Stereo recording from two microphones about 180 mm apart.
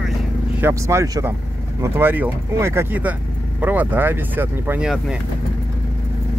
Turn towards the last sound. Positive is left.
turn(degrees=-10)  # may be behind; listen again after turning